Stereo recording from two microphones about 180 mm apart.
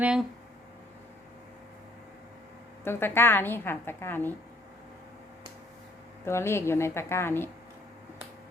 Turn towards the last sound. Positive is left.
turn(degrees=15)  # may be behind; listen again after turning